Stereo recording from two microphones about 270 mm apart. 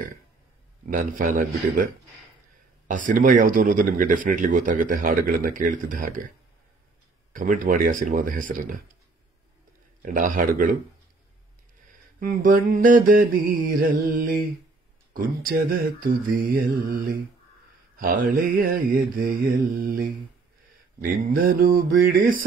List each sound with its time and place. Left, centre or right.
0.8 s speech: right
2.9 s speech: right
7.3 s speech: right
10.0 s speech: right
11.9 s mantra: right
21.3 s mantra: right